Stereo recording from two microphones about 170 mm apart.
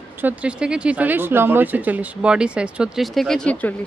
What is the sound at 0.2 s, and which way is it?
Speech, 10° right (ahead or behind).